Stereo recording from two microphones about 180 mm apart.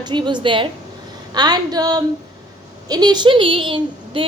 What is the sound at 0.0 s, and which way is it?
A woman's voice, 25° right (ahead or behind).